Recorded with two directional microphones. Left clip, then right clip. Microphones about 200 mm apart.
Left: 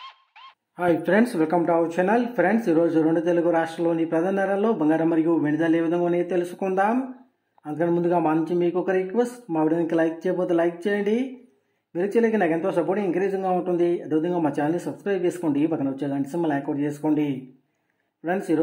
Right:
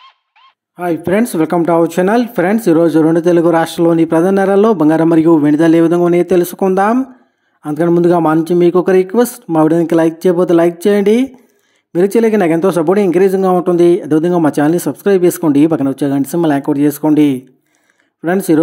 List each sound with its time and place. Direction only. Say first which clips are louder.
0.7 s speech: right 6 dB; 25° right (ahead or behind); by 18.6 s 40° right (ahead or behind)